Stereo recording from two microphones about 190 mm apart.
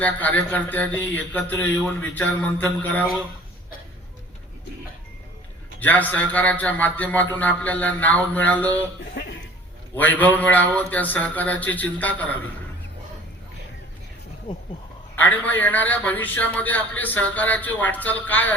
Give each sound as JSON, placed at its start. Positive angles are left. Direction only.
{"t": 0.0, "sound": "a man's voice", "side_deg": 10}
{"t": 5.8, "sound": "a man's voice", "side_deg": 10}
{"t": 9.9, "sound": "a man's voice", "side_deg": 10}
{"t": 15.1, "sound": "a man's voice", "side_deg": 10}